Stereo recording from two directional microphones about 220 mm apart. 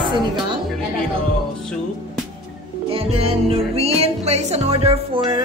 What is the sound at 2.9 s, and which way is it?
Speech, 25° right (ahead or behind).